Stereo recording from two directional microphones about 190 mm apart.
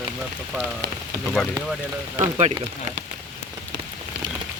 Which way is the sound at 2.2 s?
35° right (ahead or behind).